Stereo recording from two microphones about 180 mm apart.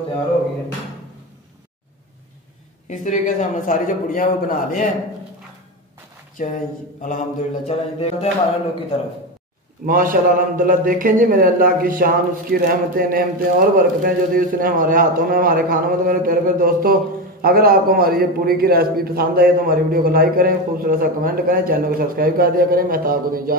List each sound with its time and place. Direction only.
2.9 s a man's voice: 45° left (ahead or behind)
6.3 s a man's voice: 45° left (ahead or behind)
7.6 s a sound: 35° left (ahead or behind)
9.8 s a man's voice: 50° right (ahead or behind)